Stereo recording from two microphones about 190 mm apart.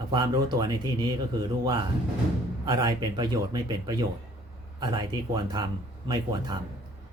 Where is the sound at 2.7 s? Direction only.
25° right (ahead or behind).